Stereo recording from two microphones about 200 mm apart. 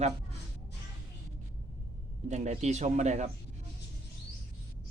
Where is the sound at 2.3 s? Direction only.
35° right (ahead or behind).